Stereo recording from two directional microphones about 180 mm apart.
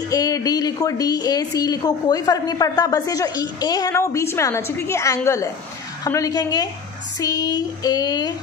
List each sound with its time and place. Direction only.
0.1 s a woman's voice: 20° left (ahead or behind)